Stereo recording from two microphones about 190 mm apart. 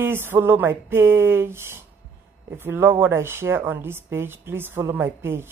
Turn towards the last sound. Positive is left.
turn(degrees=-10)  # may be behind; listen again after turning